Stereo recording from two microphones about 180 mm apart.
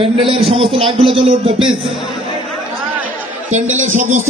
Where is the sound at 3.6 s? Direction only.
90° right.